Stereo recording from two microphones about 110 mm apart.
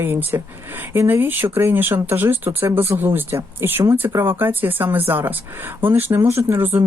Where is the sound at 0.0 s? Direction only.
20° right (ahead or behind).